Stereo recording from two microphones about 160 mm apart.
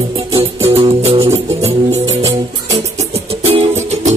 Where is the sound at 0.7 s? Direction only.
40° right (ahead or behind).